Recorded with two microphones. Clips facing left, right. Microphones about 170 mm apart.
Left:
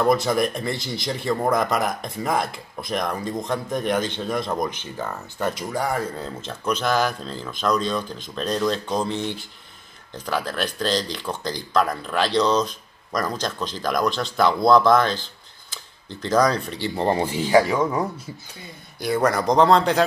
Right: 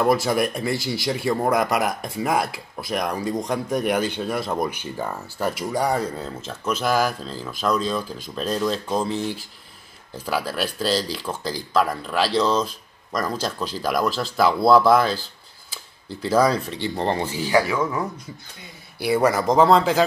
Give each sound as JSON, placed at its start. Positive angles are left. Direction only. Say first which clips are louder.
{"t": 0.0, "sound": "speech", "louder": "even", "side_deg": -5}
{"t": 5.8, "sound": "speech", "louder": "right 3 dB", "side_deg": -15}
{"t": 6.1, "sound": "speech", "louder": "even", "side_deg": -5}
{"t": 17.0, "sound": "speech", "louder": "left 3 dB", "side_deg": 20}
{"t": 18.9, "sound": "speech", "louder": "right 2 dB", "side_deg": -10}